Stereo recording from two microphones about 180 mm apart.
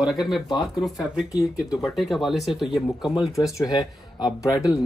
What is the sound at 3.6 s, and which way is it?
Speech, 20° left (ahead or behind).